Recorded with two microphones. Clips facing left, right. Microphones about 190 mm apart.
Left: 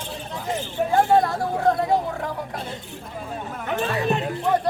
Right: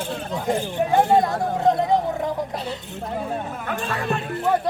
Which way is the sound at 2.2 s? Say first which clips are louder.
Right 4 dB; 20° right (ahead or behind).